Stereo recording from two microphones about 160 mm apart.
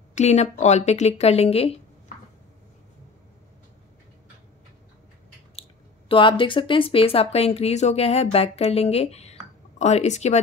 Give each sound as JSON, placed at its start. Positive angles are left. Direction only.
{"t": 0.1, "sound": "speech", "side_deg": 45}
{"t": 5.6, "sound": "speech", "side_deg": 35}